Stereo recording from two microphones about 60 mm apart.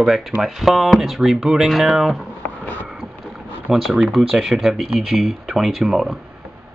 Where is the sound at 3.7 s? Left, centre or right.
Centre.